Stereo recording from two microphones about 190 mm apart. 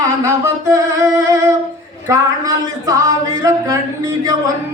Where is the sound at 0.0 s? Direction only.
15° right (ahead or behind).